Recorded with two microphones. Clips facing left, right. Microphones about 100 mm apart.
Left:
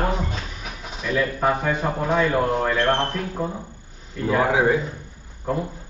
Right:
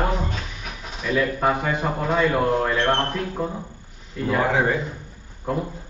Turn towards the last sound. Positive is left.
turn(degrees=-5)  # may be behind; listen again after turning